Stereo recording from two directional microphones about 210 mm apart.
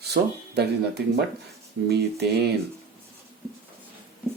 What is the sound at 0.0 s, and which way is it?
Speech, 50° right (ahead or behind).